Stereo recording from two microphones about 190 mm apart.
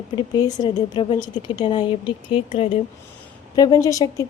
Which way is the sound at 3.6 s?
20° left (ahead or behind).